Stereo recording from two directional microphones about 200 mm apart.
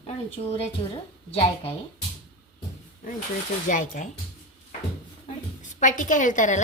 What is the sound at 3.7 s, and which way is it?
Speech, 40° left (ahead or behind).